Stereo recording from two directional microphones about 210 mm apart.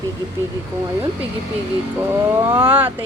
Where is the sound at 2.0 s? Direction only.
10° right (ahead or behind).